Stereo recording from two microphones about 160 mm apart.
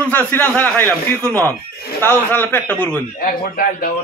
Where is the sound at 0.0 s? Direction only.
10° left (ahead or behind).